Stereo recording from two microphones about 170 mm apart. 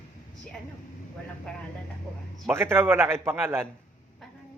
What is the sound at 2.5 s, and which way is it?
A man's voice, 15° right (ahead or behind).